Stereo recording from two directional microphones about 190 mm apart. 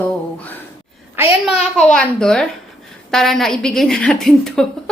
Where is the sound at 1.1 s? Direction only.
10° right (ahead or behind).